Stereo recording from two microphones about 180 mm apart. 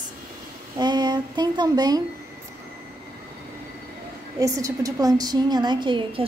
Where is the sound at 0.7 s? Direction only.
25° right (ahead or behind).